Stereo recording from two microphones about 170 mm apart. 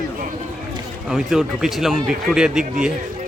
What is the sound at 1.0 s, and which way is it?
Speech, 5° right (ahead or behind).